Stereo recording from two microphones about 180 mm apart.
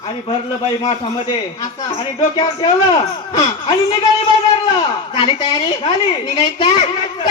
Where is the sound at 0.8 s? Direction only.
30° left (ahead or behind).